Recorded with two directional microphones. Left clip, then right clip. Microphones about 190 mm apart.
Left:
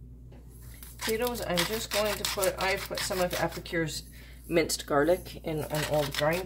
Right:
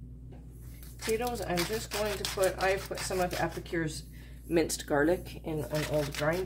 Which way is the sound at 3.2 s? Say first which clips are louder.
Left 1 dB; 40° left (ahead or behind).